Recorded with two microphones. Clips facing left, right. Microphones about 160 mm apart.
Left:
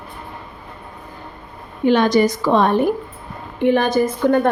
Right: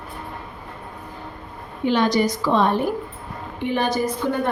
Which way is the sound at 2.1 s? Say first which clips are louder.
Left 4 dB; 50° left (ahead or behind).